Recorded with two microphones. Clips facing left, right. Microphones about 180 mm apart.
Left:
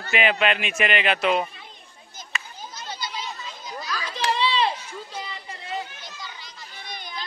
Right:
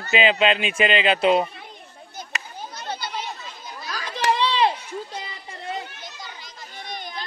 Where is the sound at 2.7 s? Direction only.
60° right (ahead or behind).